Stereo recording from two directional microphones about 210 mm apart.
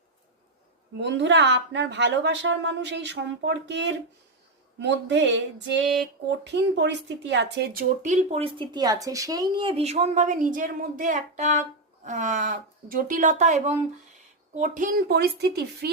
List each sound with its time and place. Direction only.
0.9 s a woman's voice: 55° right (ahead or behind)